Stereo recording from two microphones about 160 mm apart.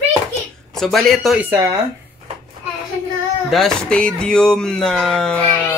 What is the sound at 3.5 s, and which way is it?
Speech, 5° left (ahead or behind).